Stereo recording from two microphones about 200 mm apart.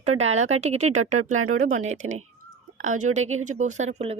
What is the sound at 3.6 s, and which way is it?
Speech, 35° right (ahead or behind).